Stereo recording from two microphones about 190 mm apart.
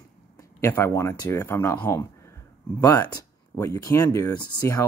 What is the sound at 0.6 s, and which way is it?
Speech, 15° left (ahead or behind).